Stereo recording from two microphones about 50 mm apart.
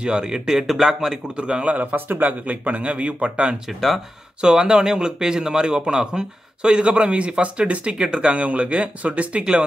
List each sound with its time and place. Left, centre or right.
0.0 s speech: centre
1.3 s a man's voice: right
2.0 s a man's voice: right